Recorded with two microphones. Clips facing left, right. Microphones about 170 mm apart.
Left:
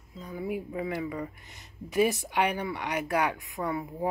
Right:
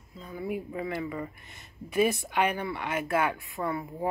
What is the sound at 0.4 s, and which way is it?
Speech, 10° left (ahead or behind).